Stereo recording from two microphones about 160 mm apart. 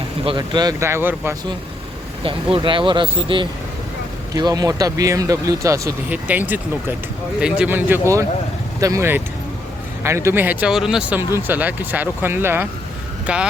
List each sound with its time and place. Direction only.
0.3 s speech: 25° right (ahead or behind)
2.2 s speech: 30° right (ahead or behind); by 13.5 s 5° right (ahead or behind)